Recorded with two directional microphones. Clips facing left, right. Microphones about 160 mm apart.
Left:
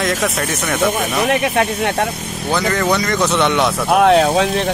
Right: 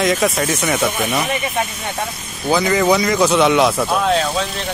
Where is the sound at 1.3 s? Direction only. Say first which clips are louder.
Left 5 dB; 75° left (ahead or behind).